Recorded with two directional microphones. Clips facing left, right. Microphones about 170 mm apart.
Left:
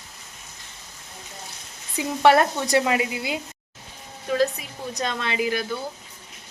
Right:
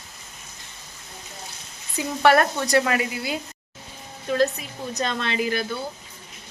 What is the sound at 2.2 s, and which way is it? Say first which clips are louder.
Speech: left 1 dB; 20° left (ahead or behind).